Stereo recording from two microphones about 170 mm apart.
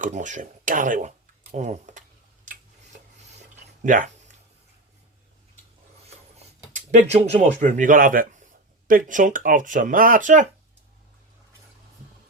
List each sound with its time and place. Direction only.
0.0 s a sound: 45° right (ahead or behind)
3.8 s speech: 50° right (ahead or behind)
7.1 s speech: 35° right (ahead or behind)